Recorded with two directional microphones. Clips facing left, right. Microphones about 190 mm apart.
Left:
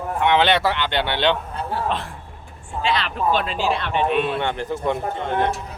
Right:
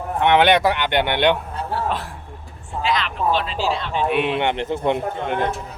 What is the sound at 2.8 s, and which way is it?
Speech, 30° left (ahead or behind).